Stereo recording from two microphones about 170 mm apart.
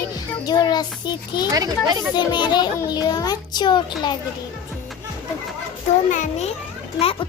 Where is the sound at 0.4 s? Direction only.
25° left (ahead or behind).